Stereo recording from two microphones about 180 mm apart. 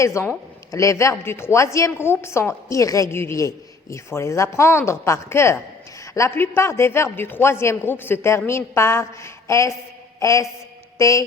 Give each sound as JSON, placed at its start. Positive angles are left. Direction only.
{"t": 0.0, "sound": "a woman's voice", "side_deg": 15}